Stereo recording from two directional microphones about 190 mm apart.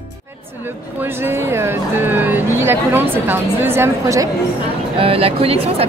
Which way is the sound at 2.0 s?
10° right (ahead or behind).